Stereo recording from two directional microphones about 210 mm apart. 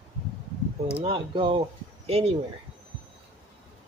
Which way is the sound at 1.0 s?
25° right (ahead or behind).